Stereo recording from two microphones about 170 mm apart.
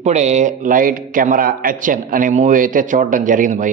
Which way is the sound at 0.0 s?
40° right (ahead or behind).